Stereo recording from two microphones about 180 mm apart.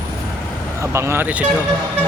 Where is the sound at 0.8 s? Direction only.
15° right (ahead or behind).